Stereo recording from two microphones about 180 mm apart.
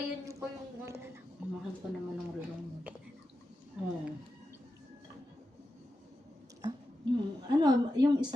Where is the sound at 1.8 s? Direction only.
5° right (ahead or behind).